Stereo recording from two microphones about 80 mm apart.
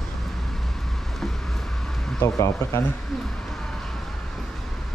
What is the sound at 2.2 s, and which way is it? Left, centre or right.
Speech, left.